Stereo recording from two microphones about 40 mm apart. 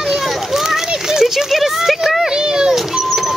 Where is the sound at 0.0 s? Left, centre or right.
Centre.